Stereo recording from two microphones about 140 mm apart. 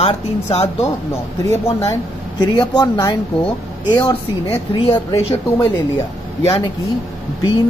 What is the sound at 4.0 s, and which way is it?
Speech, 40° left (ahead or behind).